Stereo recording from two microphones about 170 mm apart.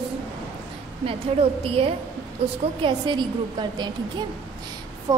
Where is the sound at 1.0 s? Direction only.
35° right (ahead or behind).